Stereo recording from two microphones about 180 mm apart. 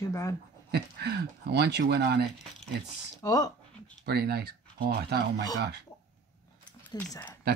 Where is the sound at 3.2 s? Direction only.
20° left (ahead or behind).